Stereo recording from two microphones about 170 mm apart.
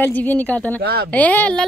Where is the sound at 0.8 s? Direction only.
70° right (ahead or behind).